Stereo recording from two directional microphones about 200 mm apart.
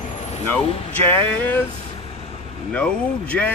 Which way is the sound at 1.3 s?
10° left (ahead or behind).